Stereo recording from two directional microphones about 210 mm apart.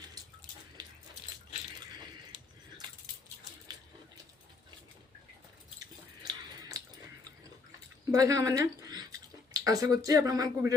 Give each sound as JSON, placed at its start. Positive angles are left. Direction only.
{"t": 5.8, "sound": "drip", "side_deg": -15}
{"t": 8.1, "sound": "speech", "side_deg": -15}